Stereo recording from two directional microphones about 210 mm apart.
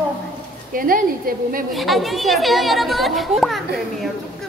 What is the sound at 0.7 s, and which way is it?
Speech, 45° right (ahead or behind).